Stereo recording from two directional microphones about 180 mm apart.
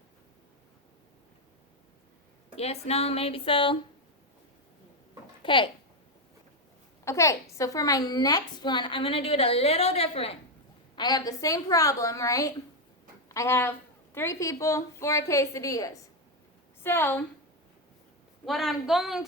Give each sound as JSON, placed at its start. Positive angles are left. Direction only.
{"t": 2.6, "sound": "speech", "side_deg": 35}
{"t": 5.4, "sound": "speech", "side_deg": 25}
{"t": 7.0, "sound": "a woman's voice", "side_deg": 15}
{"t": 10.9, "sound": "a woman's voice", "side_deg": 25}
{"t": 18.4, "sound": "a woman's voice", "side_deg": 0}